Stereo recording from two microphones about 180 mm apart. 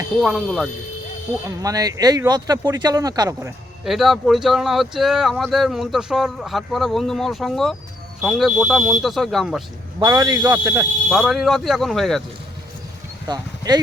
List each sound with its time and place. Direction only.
0.2 s speech: centre (ahead or behind)
1.5 s speech: 20° right (ahead or behind)
3.8 s speech: centre (ahead or behind)
10.0 s speech: 20° right (ahead or behind)
11.1 s speech: centre (ahead or behind)
13.2 s speech: 20° right (ahead or behind)